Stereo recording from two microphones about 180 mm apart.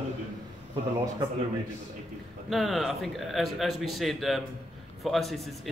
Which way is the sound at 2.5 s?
Centre (ahead or behind).